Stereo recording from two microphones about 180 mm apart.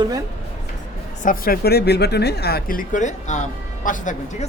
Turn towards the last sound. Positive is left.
turn(degrees=45)  # may be behind; listen again after turning